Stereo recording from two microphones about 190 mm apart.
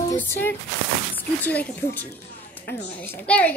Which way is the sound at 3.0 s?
10° left (ahead or behind).